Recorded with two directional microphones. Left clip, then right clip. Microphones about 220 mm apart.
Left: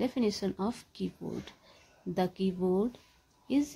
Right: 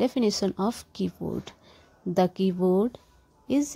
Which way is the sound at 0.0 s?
30° right (ahead or behind).